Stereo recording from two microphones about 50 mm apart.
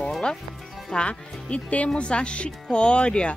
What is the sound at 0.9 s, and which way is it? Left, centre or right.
Speech, left.